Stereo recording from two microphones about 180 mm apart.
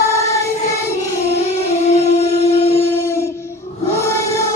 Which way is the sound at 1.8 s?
35° left (ahead or behind).